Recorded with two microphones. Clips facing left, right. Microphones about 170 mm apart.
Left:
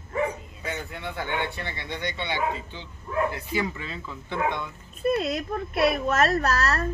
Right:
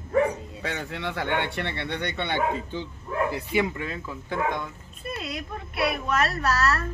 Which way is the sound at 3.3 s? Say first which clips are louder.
Right 3 dB; 25° right (ahead or behind).